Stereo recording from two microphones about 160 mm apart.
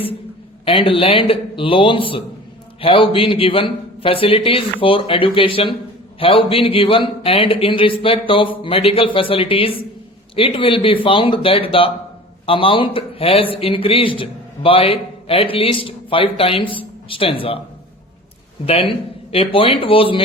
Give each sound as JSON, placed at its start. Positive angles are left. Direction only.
{"t": 0.6, "sound": "a man's voice", "side_deg": 35}
{"t": 18.6, "sound": "a man's voice", "side_deg": 35}